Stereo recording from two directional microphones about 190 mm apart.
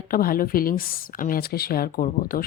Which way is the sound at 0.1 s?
50° left (ahead or behind).